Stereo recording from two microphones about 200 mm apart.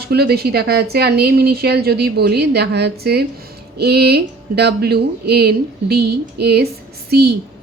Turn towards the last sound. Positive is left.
turn(degrees=-55)  # may be behind; listen again after turning